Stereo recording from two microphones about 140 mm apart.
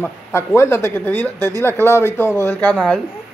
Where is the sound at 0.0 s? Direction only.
20° left (ahead or behind).